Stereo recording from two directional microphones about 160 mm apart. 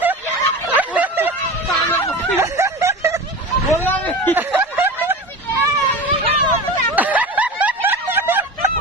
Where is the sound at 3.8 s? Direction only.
10° left (ahead or behind).